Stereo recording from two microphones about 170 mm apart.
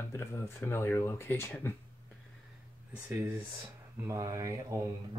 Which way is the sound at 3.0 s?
15° right (ahead or behind).